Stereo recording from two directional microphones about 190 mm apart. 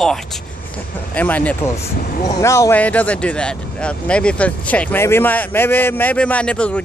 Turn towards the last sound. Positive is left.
turn(degrees=5)  # may be behind; listen again after turning